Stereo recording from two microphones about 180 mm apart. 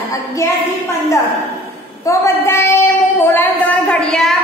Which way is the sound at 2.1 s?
15° left (ahead or behind).